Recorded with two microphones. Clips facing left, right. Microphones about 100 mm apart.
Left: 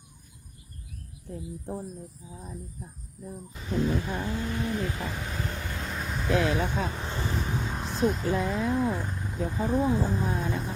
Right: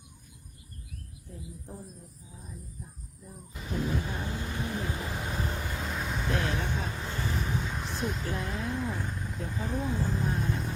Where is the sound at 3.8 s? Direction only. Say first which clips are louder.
Left 3 dB; 15° right (ahead or behind).